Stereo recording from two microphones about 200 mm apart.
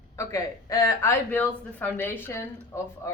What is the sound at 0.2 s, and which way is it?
A woman's voice, 15° left (ahead or behind).